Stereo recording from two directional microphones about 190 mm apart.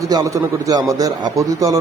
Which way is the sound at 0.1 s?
20° right (ahead or behind).